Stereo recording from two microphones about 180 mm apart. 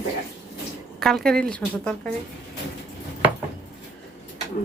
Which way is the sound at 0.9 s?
Centre (ahead or behind).